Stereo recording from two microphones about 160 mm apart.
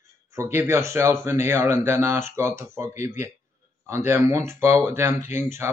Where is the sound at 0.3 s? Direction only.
15° right (ahead or behind).